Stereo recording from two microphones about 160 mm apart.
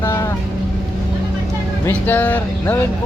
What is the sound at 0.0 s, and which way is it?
Vehicle, 15° left (ahead or behind).